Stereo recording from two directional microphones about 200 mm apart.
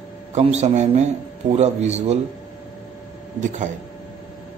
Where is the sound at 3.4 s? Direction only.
35° right (ahead or behind).